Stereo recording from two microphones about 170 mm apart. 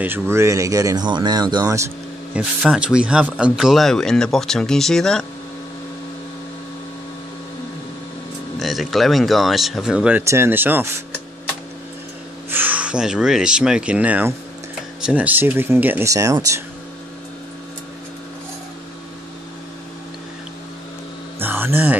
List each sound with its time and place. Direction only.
0.0 s speech: 15° right (ahead or behind)
2.3 s speech: 5° right (ahead or behind)
8.5 s speech: centre (ahead or behind)
12.4 s speech: 10° right (ahead or behind)
21.4 s a sound: 10° right (ahead or behind)